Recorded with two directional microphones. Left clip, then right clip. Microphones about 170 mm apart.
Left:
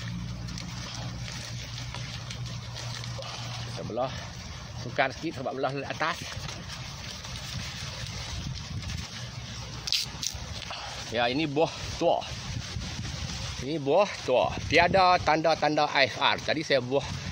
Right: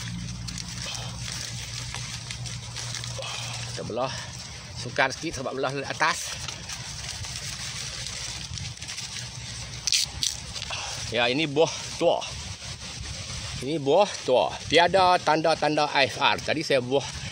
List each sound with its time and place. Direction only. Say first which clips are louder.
4.9 s speech: right 3 dB; 30° right (ahead or behind)
9.8 s squish: right 5 dB; centre (ahead or behind)
10.7 s speech: right 4 dB; 30° right (ahead or behind)
13.7 s speech: right 3 dB; 35° right (ahead or behind)